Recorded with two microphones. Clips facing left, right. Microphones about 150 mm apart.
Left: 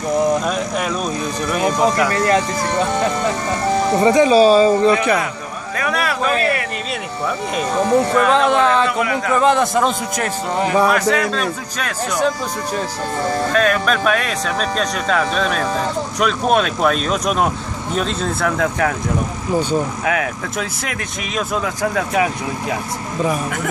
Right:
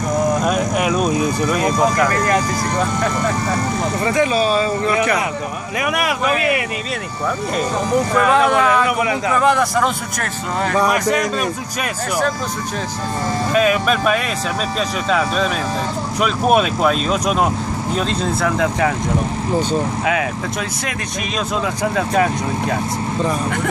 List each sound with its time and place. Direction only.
0.4 s a sound: 5° right (ahead or behind)
1.5 s speech: centre (ahead or behind)
4.0 s speech: 30° left (ahead or behind)
5.8 s a man's voice: 15° right (ahead or behind)
8.2 s a man's voice: 10° right (ahead or behind)
9.4 s a man's voice: 20° left (ahead or behind)
10.9 s a man's voice: 10° right (ahead or behind)
13.5 s speech: 5° right (ahead or behind)
22.1 s speech: 10° left (ahead or behind)